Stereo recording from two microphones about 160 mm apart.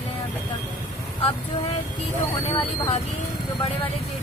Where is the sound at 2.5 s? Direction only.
35° left (ahead or behind).